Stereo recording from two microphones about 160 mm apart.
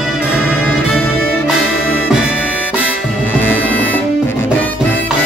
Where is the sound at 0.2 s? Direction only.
5° right (ahead or behind).